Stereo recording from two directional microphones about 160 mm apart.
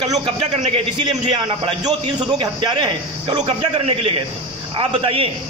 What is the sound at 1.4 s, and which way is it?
A man's voice, 25° right (ahead or behind).